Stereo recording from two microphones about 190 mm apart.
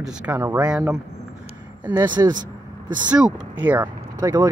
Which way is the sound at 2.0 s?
20° right (ahead or behind).